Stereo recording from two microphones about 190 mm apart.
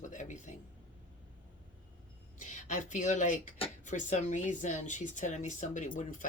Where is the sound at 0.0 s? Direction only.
40° left (ahead or behind).